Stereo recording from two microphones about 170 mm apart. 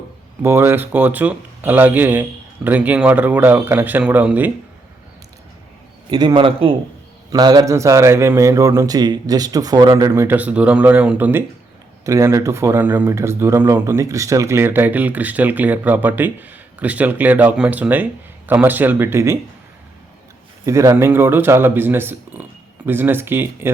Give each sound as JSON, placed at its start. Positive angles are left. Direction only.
{"t": 0.4, "sound": "speech", "side_deg": -15}
{"t": 6.1, "sound": "a man's voice", "side_deg": -25}
{"t": 20.7, "sound": "speech", "side_deg": -15}